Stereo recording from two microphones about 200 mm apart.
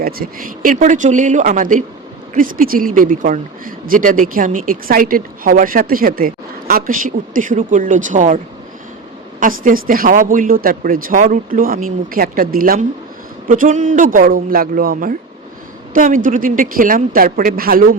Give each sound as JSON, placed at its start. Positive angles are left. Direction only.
{"t": 0.0, "sound": "speech", "side_deg": -45}
{"t": 9.4, "sound": "speech", "side_deg": -45}